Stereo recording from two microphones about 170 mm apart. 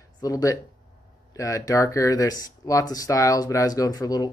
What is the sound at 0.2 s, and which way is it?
Speech, 20° left (ahead or behind).